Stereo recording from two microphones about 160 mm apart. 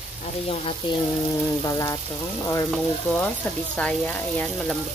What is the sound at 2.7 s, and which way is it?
Speech, 10° left (ahead or behind).